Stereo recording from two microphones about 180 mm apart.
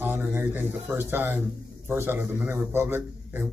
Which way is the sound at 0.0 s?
10° right (ahead or behind).